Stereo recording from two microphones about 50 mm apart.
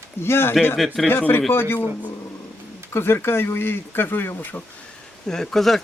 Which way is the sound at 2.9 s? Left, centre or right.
Left.